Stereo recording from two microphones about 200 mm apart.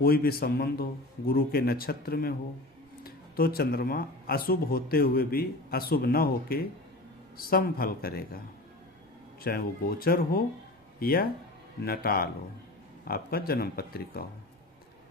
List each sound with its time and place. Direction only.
0.0 s speech: 50° left (ahead or behind)
9.4 s speech: 50° left (ahead or behind)